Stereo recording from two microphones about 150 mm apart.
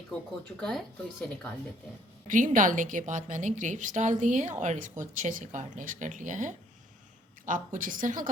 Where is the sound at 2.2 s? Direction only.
60° right (ahead or behind).